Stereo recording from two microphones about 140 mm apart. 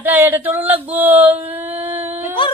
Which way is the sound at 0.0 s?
15° right (ahead or behind).